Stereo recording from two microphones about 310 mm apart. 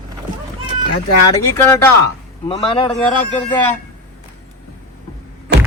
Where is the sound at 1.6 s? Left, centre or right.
Centre.